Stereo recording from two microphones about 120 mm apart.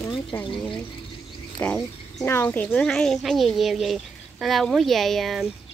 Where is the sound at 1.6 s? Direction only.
15° left (ahead or behind).